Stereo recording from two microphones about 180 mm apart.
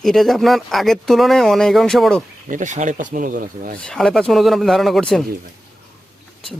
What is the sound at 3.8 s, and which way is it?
Speech, 5° left (ahead or behind).